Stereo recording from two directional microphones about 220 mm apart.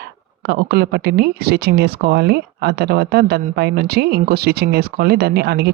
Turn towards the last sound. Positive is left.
turn(degrees=-45)  # may be behind; listen again after turning